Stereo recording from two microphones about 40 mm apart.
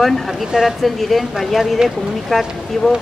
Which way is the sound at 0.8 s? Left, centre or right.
Centre.